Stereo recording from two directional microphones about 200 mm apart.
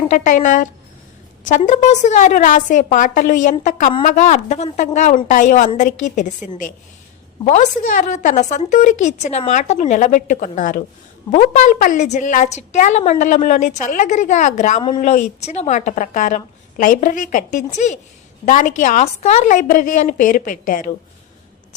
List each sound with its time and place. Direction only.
0.1 s a woman's voice: 40° left (ahead or behind)
7.4 s a woman's voice: 35° left (ahead or behind)
14.8 s a woman's voice: 25° left (ahead or behind); by 20.8 s 40° left (ahead or behind)